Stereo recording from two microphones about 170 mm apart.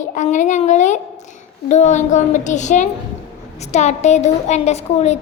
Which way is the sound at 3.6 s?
40° left (ahead or behind).